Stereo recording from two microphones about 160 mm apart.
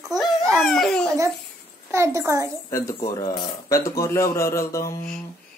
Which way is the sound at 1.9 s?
20° right (ahead or behind).